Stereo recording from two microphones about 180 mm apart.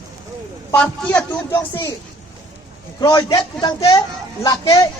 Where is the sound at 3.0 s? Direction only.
20° left (ahead or behind).